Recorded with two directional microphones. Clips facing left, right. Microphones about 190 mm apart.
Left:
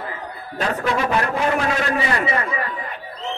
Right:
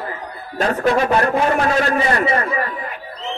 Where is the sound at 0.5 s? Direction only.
40° right (ahead or behind).